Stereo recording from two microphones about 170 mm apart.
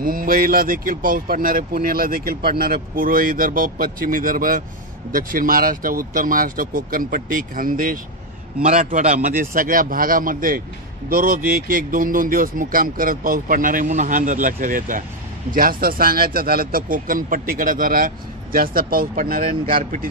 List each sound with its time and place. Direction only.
0.0 s speech: 55° right (ahead or behind)
8.6 s speech: 45° right (ahead or behind)